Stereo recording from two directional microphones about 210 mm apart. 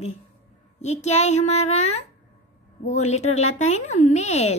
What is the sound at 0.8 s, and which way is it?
Speech, 30° left (ahead or behind).